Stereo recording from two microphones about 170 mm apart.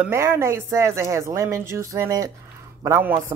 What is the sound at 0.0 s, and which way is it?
Speech, 15° right (ahead or behind).